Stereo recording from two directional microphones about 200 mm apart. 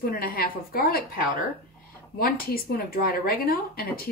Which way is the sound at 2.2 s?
50° left (ahead or behind).